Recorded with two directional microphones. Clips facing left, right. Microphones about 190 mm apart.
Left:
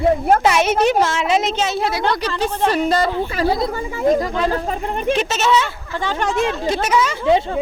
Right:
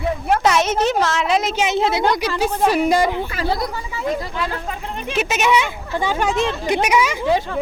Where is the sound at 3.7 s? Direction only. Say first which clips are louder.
Left 7 dB; 45° left (ahead or behind).